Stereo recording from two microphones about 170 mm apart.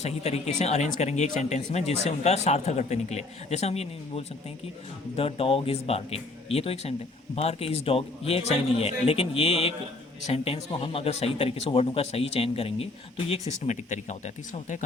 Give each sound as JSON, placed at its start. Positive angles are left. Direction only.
{"t": 0.0, "sound": "speech", "side_deg": 40}